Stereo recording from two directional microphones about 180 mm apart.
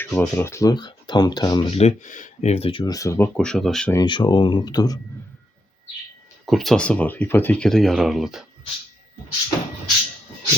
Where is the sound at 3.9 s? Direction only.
25° left (ahead or behind).